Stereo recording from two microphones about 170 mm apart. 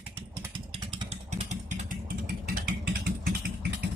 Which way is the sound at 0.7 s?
30° right (ahead or behind).